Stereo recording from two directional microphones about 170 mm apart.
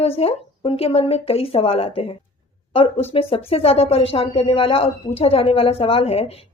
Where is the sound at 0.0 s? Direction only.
35° left (ahead or behind).